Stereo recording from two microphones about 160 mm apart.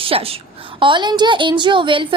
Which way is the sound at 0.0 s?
35° right (ahead or behind).